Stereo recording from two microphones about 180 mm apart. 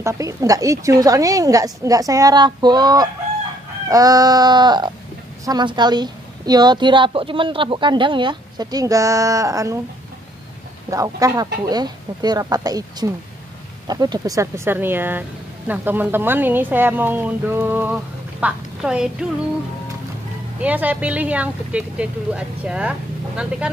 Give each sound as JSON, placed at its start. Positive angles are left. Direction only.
{"t": 0.0, "sound": "a woman's voice", "side_deg": -20}
{"t": 10.9, "sound": "a woman's voice", "side_deg": -20}
{"t": 20.6, "sound": "speech", "side_deg": -10}